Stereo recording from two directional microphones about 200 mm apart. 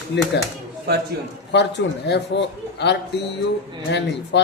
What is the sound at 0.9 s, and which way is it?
Speech, 55° right (ahead or behind).